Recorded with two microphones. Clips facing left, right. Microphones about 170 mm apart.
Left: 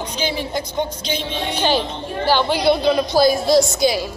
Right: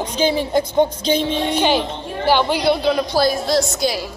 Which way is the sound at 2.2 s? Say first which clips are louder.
Even; 15° right (ahead or behind).